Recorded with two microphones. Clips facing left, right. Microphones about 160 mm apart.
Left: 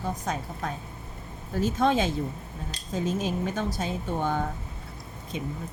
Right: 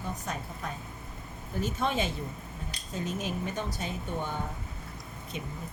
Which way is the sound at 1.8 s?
90° left.